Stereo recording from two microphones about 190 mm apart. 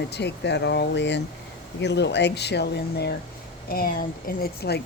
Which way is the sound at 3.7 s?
50° left (ahead or behind).